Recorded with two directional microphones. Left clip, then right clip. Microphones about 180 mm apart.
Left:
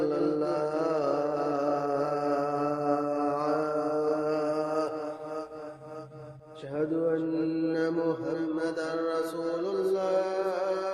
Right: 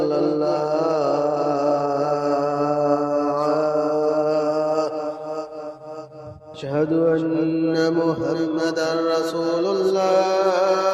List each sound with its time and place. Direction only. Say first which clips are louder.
0.0 s mantra: right 8 dB; 25° right (ahead or behind)
6.7 s mantra: right 9 dB; 50° right (ahead or behind)
7.3 s mantra: right 8 dB; 35° right (ahead or behind)